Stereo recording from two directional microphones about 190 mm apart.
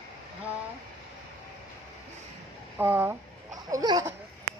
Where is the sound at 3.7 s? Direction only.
20° right (ahead or behind).